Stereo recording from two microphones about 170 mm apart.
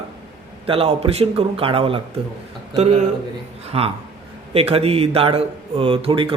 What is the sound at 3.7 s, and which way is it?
Speech, 35° right (ahead or behind).